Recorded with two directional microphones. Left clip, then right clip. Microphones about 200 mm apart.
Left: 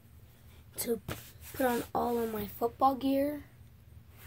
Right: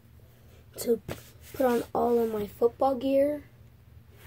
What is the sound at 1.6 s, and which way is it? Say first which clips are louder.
A woman's voice: right 5 dB; 20° left (ahead or behind).